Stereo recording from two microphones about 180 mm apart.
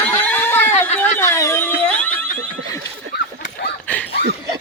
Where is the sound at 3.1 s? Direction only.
65° left (ahead or behind).